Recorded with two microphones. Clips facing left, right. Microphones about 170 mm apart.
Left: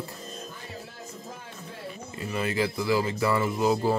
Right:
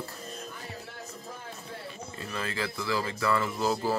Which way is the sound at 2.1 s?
20° left (ahead or behind).